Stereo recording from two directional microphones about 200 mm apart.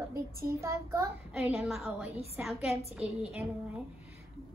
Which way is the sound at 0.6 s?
15° right (ahead or behind).